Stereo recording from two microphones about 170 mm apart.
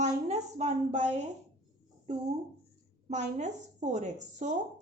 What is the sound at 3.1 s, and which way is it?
A woman's voice, 45° right (ahead or behind).